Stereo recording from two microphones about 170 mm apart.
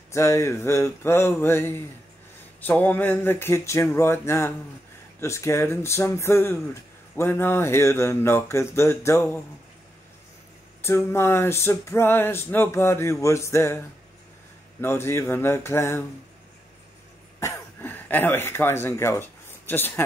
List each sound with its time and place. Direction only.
0.1 s speech: 15° left (ahead or behind)
10.8 s speech: 15° left (ahead or behind)
14.8 s speech: 15° left (ahead or behind)
17.4 s speech: 15° left (ahead or behind)